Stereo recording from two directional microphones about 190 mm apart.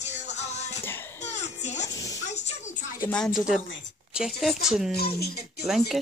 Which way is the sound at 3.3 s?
Centre (ahead or behind).